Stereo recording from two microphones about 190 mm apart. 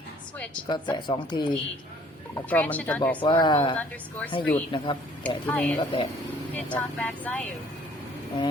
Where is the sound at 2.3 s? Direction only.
10° left (ahead or behind).